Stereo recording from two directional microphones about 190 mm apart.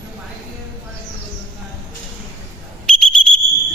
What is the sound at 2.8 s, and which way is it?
Whistle, 5° left (ahead or behind).